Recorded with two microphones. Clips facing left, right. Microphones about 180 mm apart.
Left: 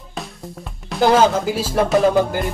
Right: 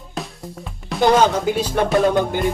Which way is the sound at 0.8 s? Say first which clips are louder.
Left 1 dB; centre (ahead or behind).